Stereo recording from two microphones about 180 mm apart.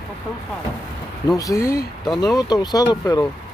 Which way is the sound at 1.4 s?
20° left (ahead or behind).